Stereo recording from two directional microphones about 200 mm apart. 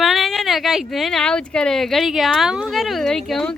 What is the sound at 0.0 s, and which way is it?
Speech, centre (ahead or behind).